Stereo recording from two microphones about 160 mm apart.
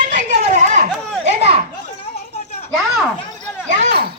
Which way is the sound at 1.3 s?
40° right (ahead or behind).